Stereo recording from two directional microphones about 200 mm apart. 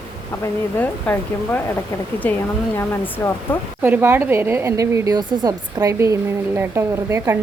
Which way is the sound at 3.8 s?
10° right (ahead or behind).